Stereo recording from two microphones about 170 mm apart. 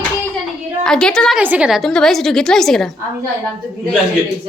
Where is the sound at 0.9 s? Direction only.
5° left (ahead or behind).